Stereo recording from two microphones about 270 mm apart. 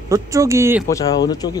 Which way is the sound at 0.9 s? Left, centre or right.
Centre.